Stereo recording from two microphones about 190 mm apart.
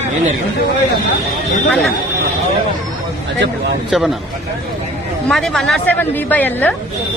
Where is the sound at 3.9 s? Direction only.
Centre (ahead or behind).